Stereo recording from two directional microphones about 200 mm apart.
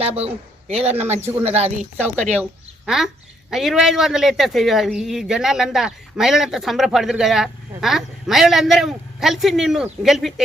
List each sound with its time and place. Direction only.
0.0 s a man's voice: 30° right (ahead or behind)
0.8 s speech: 10° right (ahead or behind)
1.4 s speech: 30° right (ahead or behind)
1.8 s a woman's voice: 10° right (ahead or behind)